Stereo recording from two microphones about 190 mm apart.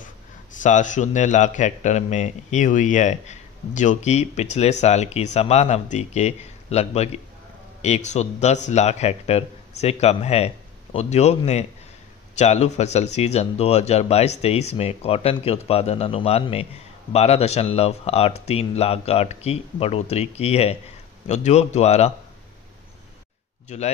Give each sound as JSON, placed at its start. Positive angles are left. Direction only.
{"t": 0.0, "sound": "speech", "side_deg": 40}
{"t": 23.7, "sound": "speech", "side_deg": 35}